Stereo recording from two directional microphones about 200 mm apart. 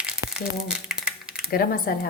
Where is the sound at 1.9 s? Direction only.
50° left (ahead or behind).